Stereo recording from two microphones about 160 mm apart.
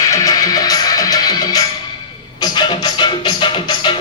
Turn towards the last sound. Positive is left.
turn(degrees=30)  # may be behind; listen again after turning